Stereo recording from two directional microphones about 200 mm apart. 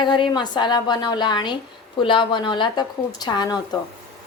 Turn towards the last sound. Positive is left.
turn(degrees=20)  # may be behind; listen again after turning